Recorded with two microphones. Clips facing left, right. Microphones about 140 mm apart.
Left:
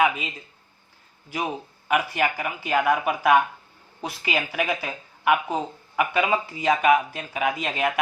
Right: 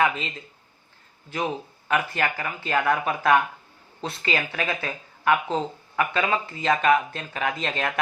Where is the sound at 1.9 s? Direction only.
15° left (ahead or behind).